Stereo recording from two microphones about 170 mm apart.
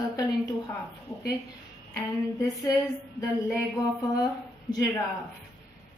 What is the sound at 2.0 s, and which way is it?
A woman's voice, 20° left (ahead or behind).